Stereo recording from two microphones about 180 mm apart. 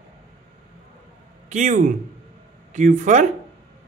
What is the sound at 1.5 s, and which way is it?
Speech, 45° right (ahead or behind).